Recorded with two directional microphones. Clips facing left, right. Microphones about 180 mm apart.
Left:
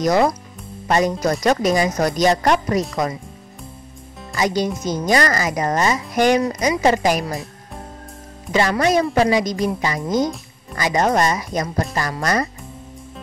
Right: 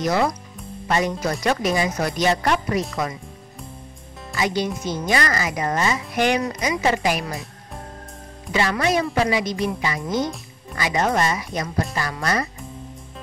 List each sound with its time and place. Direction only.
0.0 s speech: 40° left (ahead or behind)
4.4 s speech: 40° left (ahead or behind)
7.2 s music: centre (ahead or behind)
8.5 s speech: 40° left (ahead or behind)